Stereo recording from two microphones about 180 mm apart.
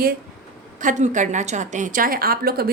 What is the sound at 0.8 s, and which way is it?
A woman's voice, 45° right (ahead or behind).